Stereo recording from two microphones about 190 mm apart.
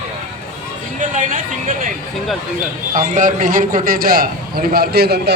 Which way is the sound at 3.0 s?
45° right (ahead or behind).